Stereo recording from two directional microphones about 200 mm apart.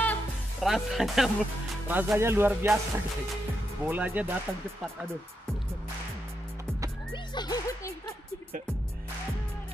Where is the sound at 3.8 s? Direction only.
10° right (ahead or behind).